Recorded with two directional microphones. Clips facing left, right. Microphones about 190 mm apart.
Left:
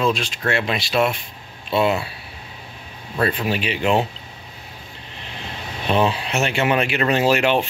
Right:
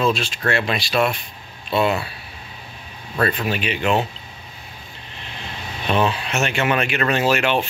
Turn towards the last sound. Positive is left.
turn(degrees=35)  # may be behind; listen again after turning